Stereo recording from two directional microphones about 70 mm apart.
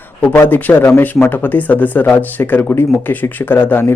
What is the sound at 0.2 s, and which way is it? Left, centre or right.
Speech, left.